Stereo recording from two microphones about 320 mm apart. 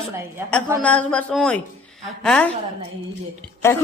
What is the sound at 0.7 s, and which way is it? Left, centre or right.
A woman's voice, centre.